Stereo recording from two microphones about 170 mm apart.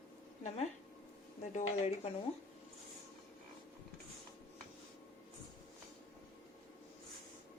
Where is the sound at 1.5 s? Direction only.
40° left (ahead or behind).